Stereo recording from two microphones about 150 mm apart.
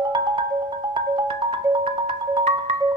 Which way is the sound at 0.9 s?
30° right (ahead or behind).